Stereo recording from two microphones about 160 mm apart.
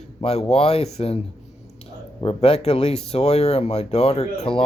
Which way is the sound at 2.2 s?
35° left (ahead or behind).